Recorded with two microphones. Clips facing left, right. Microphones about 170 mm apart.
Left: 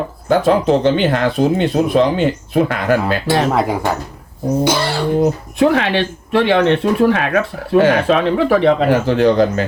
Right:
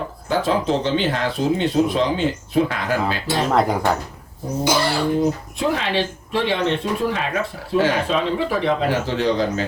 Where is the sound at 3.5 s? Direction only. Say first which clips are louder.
Left 1 dB; 5° left (ahead or behind).